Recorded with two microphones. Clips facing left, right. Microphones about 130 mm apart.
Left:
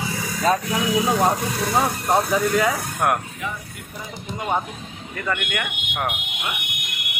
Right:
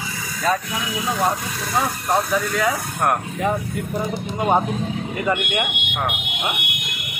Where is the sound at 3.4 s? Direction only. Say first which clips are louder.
Right 10 dB; 50° right (ahead or behind).